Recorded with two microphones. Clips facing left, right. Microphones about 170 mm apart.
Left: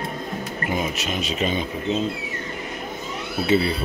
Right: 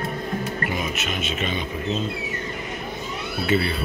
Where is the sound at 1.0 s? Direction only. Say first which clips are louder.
Left 2 dB; 35° left (ahead or behind).